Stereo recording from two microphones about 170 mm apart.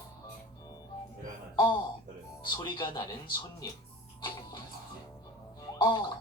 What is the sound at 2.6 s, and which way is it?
Gargling, 25° left (ahead or behind).